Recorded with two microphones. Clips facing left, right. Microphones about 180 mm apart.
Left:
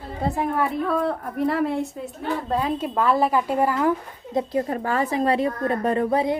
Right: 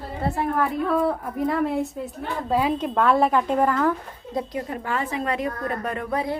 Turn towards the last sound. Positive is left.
turn(degrees=30)  # may be behind; listen again after turning